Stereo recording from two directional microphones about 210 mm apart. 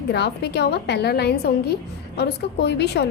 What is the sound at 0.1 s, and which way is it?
A woman's voice, 55° left (ahead or behind).